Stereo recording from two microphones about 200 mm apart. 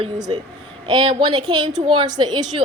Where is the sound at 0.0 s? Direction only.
20° right (ahead or behind).